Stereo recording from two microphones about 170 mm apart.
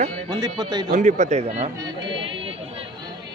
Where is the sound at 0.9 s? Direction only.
45° right (ahead or behind).